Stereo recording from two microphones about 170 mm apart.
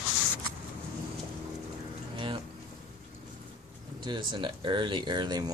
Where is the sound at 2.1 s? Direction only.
30° right (ahead or behind).